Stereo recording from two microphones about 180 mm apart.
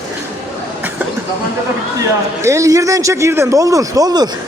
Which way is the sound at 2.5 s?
15° right (ahead or behind).